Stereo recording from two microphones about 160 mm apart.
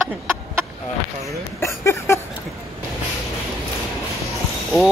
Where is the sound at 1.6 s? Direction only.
15° left (ahead or behind).